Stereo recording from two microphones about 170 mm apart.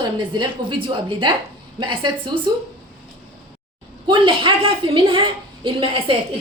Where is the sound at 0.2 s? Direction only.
30° right (ahead or behind).